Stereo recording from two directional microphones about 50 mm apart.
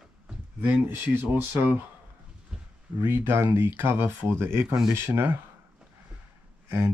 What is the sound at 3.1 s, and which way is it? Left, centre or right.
Speech, right.